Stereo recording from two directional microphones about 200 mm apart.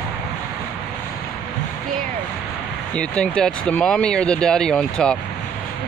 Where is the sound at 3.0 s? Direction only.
5° left (ahead or behind).